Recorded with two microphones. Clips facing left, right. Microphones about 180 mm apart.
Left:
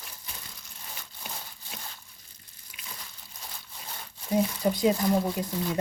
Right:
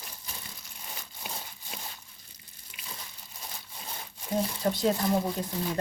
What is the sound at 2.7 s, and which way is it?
Crunch, centre (ahead or behind).